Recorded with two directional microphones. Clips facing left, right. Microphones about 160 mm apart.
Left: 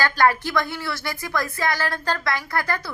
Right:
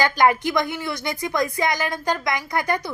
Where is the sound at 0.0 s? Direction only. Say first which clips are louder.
Right 2 dB; 15° right (ahead or behind).